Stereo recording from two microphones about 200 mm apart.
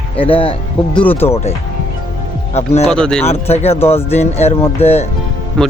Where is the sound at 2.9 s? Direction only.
5° left (ahead or behind).